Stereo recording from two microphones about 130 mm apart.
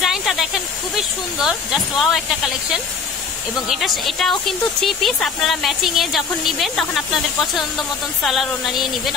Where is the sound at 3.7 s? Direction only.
Centre (ahead or behind).